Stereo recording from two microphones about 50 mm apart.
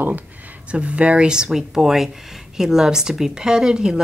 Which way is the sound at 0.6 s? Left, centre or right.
Right.